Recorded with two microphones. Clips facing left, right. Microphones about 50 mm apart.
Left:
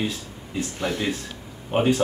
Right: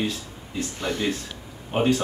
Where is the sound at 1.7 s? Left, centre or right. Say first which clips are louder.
Left 1 dB; centre.